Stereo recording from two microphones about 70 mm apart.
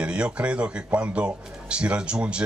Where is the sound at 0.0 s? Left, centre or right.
Centre.